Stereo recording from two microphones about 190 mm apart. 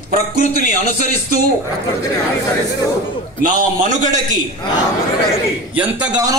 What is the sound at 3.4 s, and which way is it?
Speech, 40° right (ahead or behind).